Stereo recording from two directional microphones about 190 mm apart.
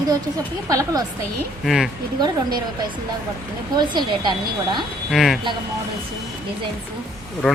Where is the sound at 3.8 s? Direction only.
25° right (ahead or behind).